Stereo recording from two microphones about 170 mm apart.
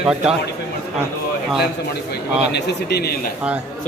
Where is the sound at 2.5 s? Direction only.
75° left (ahead or behind).